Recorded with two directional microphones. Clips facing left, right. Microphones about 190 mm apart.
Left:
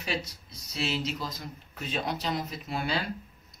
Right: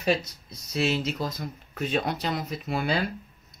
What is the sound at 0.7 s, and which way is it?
Speech, 50° right (ahead or behind).